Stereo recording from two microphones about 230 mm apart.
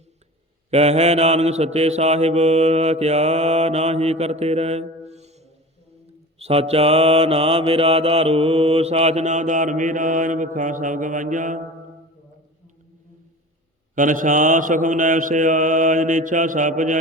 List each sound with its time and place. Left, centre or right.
0.7 s mantra: right
13.9 s mantra: right